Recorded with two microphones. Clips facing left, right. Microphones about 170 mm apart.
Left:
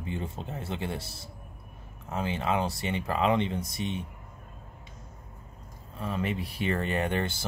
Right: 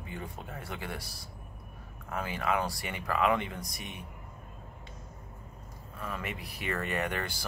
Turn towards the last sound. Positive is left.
turn(degrees=25)  # may be behind; listen again after turning